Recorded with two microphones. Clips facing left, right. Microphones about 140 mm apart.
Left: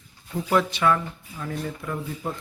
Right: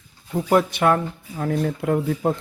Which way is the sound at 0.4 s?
50° right (ahead or behind).